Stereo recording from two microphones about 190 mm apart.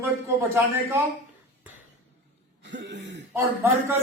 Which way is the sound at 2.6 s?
70° right (ahead or behind).